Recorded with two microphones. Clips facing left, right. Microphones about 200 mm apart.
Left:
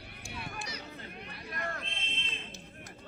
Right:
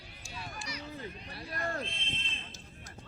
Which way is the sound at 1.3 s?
35° right (ahead or behind).